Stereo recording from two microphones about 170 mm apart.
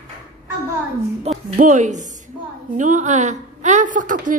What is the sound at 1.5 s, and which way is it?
A woman's voice, 45° right (ahead or behind).